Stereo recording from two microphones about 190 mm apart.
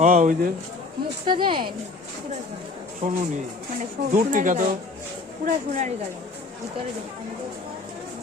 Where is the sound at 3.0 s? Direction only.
40° right (ahead or behind).